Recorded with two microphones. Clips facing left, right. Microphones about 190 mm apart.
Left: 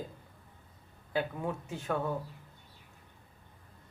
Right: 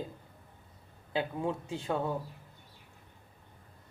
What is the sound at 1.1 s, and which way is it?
Speech, 20° right (ahead or behind).